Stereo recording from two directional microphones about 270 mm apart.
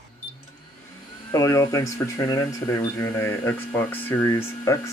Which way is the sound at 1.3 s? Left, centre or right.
Centre.